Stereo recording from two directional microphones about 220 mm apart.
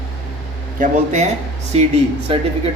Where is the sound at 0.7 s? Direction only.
35° right (ahead or behind).